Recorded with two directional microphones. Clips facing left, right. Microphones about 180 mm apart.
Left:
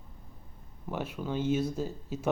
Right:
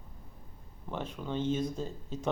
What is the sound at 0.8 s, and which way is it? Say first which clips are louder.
Speech: left 3 dB; 10° left (ahead or behind).